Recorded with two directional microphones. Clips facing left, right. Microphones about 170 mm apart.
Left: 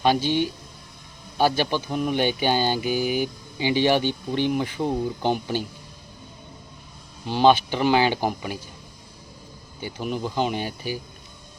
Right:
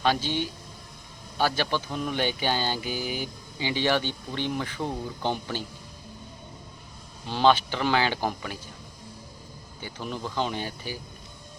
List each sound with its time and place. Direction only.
0.0 s speech: 15° left (ahead or behind)
7.3 s speech: 15° left (ahead or behind)
9.8 s speech: 15° left (ahead or behind)